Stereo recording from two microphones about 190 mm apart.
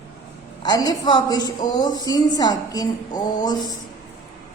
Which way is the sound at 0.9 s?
20° left (ahead or behind).